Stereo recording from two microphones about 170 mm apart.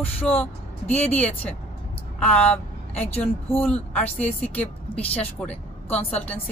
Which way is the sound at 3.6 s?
10° left (ahead or behind).